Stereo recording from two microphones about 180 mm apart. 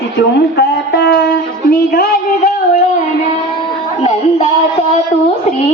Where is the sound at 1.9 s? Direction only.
55° left (ahead or behind).